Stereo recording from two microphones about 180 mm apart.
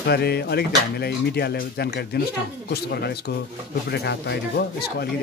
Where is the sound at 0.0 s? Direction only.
65° left (ahead or behind).